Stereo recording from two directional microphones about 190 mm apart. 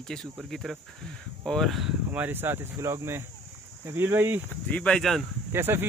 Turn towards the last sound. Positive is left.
turn(degrees=-10)  # may be behind; listen again after turning